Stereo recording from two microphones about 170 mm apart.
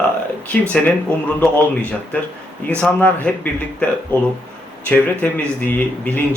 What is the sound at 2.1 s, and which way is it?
Speech, 10° left (ahead or behind).